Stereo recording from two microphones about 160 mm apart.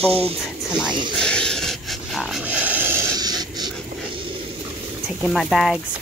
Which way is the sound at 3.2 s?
25° right (ahead or behind).